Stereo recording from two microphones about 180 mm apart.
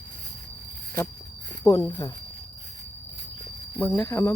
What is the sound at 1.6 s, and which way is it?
Speech, 20° left (ahead or behind).